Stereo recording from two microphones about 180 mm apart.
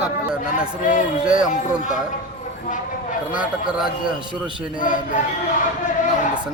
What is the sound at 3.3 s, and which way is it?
Speech, 5° right (ahead or behind).